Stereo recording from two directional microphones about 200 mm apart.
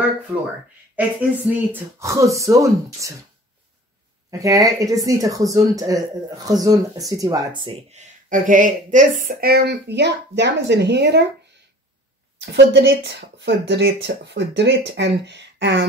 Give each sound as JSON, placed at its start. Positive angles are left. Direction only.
{"t": 0.9, "sound": "speech", "side_deg": -10}
{"t": 4.3, "sound": "speech", "side_deg": -15}
{"t": 8.3, "sound": "speech", "side_deg": -40}
{"t": 12.4, "sound": "speech", "side_deg": -55}